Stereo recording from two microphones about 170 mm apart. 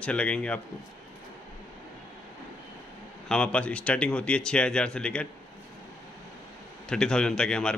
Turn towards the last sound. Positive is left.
turn(degrees=5)  # may be behind; listen again after turning